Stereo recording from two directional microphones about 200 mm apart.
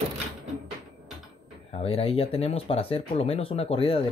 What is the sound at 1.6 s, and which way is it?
Speech, 30° left (ahead or behind).